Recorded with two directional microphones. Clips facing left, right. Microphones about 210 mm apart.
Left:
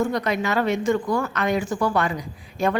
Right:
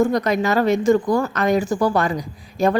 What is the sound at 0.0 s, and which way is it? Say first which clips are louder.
A woman's voice: right 5 dB; 40° right (ahead or behind).